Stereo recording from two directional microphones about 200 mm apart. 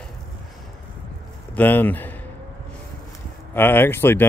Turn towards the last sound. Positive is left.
turn(degrees=10)  # may be behind; listen again after turning